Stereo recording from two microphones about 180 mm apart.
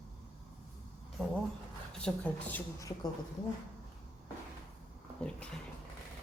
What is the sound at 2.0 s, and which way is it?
Speech, 5° left (ahead or behind).